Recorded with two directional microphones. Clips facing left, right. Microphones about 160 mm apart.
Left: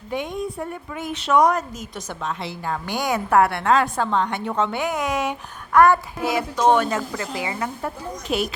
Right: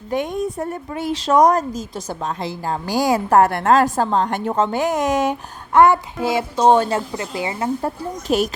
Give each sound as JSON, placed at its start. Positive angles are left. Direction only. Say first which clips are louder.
{"t": 0.1, "sound": "a woman's voice", "louder": "right 5 dB", "side_deg": -45}
{"t": 5.7, "sound": "a child's voice", "louder": "right 2 dB", "side_deg": -25}